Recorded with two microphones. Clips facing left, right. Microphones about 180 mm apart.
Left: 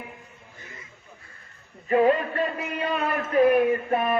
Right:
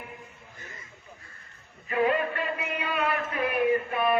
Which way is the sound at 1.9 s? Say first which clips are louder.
Left 5 dB; 40° left (ahead or behind).